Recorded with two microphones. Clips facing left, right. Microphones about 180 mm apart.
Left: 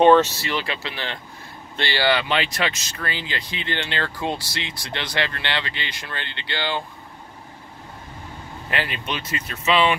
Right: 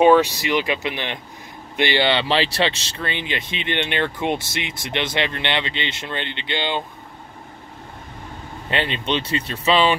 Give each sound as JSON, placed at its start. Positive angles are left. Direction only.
{"t": 0.0, "sound": "speech", "side_deg": -10}
{"t": 8.6, "sound": "speech", "side_deg": -25}